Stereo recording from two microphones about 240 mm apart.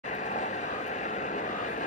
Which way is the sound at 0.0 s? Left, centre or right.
Left.